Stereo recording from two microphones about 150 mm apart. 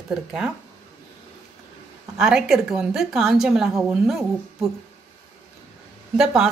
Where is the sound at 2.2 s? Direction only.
5° right (ahead or behind).